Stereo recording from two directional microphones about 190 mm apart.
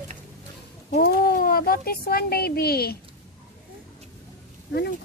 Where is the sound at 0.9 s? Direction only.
50° left (ahead or behind).